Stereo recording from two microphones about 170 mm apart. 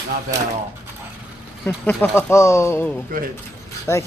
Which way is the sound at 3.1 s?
55° right (ahead or behind).